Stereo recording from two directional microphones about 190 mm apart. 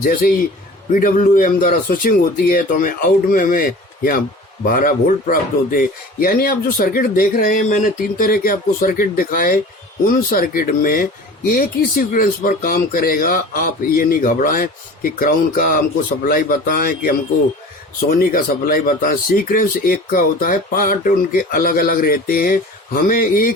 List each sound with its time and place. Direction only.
0.0 s speech: 50° left (ahead or behind)